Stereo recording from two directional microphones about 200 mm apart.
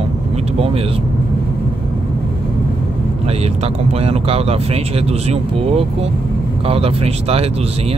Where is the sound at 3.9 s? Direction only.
30° right (ahead or behind).